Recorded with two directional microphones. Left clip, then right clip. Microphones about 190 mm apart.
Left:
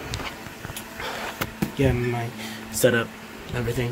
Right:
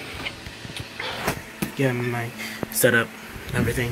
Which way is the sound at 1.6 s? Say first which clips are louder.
Left 2 dB; 10° left (ahead or behind).